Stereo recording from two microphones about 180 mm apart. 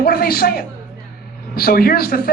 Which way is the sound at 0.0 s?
55° left (ahead or behind).